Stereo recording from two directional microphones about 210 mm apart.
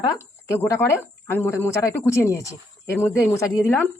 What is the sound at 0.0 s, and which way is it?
Speech, 10° left (ahead or behind).